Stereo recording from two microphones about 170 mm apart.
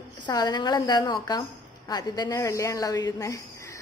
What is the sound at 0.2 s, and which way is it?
A woman's voice, 25° left (ahead or behind).